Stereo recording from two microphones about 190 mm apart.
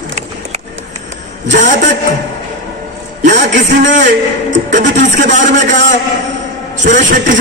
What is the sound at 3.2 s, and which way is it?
A man's voice, 40° right (ahead or behind).